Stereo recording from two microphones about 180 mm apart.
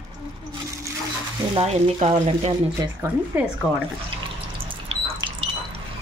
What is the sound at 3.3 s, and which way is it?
Speech, 15° right (ahead or behind).